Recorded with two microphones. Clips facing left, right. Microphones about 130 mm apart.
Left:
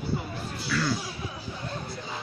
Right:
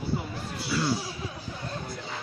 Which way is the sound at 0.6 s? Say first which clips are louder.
Even; 25° right (ahead or behind).